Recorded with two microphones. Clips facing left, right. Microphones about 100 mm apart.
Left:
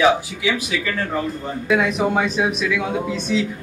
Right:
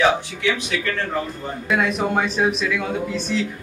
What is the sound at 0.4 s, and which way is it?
Speech, 5° left (ahead or behind).